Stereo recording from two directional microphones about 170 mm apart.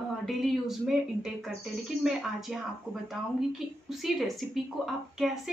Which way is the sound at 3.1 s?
Centre (ahead or behind).